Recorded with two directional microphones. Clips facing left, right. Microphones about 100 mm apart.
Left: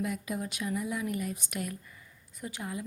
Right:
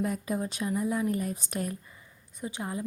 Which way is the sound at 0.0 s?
35° right (ahead or behind).